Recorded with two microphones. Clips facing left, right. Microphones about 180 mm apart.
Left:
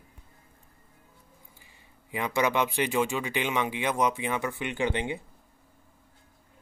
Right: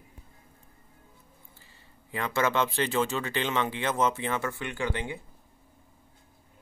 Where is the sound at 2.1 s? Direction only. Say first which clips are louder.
Left 1 dB; 15° left (ahead or behind).